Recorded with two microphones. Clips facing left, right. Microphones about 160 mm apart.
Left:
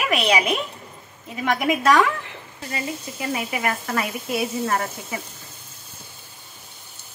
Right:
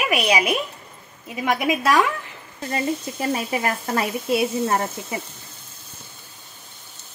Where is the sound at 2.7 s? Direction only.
35° right (ahead or behind).